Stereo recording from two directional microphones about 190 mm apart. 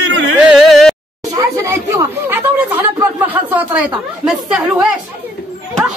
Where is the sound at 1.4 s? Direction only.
15° right (ahead or behind).